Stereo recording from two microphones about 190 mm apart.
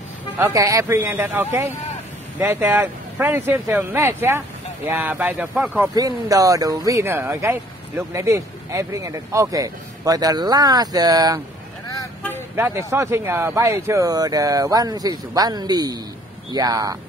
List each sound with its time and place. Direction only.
0.4 s speech: 15° right (ahead or behind)
5.9 s speech: 20° right (ahead or behind)
11.9 s vehicle: 15° left (ahead or behind)
12.5 s speech: 15° right (ahead or behind)